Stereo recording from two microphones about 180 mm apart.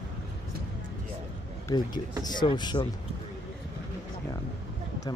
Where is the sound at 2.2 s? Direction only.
25° left (ahead or behind).